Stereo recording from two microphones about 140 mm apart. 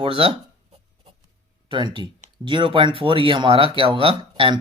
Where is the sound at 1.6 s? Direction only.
35° right (ahead or behind).